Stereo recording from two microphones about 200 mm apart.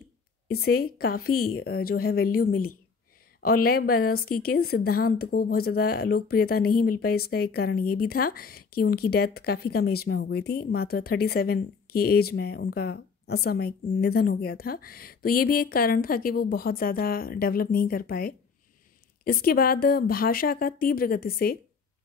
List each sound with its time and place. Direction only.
0.5 s speech: 50° left (ahead or behind)